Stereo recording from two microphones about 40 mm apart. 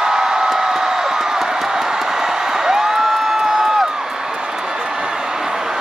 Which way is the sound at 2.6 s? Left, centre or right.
Centre.